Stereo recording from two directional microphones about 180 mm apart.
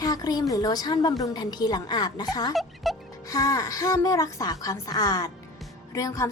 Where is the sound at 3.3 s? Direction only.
20° left (ahead or behind).